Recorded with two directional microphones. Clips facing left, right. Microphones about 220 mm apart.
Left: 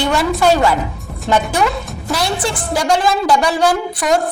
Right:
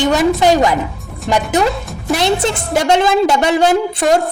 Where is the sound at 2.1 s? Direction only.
20° right (ahead or behind).